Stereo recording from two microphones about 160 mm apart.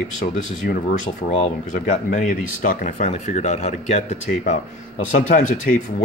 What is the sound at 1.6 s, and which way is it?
Speech, 50° left (ahead or behind).